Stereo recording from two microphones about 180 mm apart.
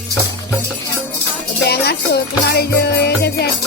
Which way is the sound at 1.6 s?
65° left (ahead or behind).